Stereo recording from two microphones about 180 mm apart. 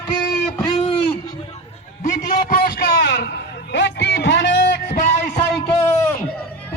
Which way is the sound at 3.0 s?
75° left (ahead or behind).